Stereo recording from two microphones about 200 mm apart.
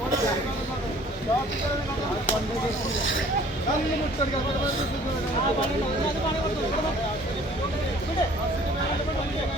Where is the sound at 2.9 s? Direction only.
75° left (ahead or behind).